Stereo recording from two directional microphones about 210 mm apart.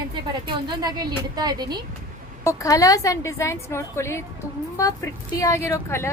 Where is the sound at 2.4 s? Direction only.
15° left (ahead or behind).